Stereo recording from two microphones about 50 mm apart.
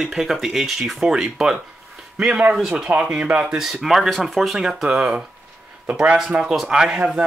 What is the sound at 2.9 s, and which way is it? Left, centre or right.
Speech, right.